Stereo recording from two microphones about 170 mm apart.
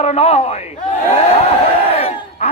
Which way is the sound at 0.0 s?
40° left (ahead or behind).